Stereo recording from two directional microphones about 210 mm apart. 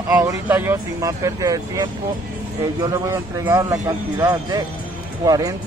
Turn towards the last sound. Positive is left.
turn(degrees=-20)  # may be behind; listen again after turning